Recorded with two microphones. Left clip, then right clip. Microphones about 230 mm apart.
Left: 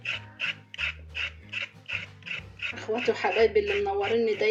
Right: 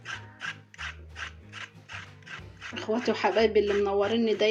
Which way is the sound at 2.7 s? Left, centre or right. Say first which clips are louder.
Even; right.